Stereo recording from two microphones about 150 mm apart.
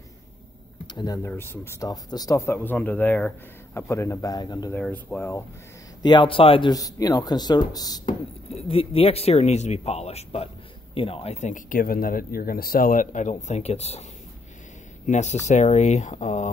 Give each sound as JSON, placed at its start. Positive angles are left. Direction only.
{"t": 0.9, "sound": "speech", "side_deg": 25}
{"t": 4.7, "sound": "speech", "side_deg": 5}
{"t": 6.0, "sound": "speech", "side_deg": 35}
{"t": 6.7, "sound": "speech", "side_deg": 25}
{"t": 8.5, "sound": "speech", "side_deg": 40}
{"t": 15.0, "sound": "speech", "side_deg": 50}